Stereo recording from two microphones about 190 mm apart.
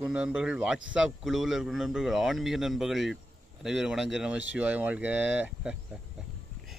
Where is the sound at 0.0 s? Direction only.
5° right (ahead or behind).